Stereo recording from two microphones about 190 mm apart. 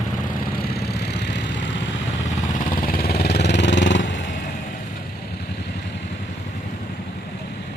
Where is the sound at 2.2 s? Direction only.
45° left (ahead or behind); by 4.2 s 75° left (ahead or behind).